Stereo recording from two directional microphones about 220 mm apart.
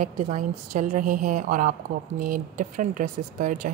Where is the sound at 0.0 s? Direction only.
35° right (ahead or behind).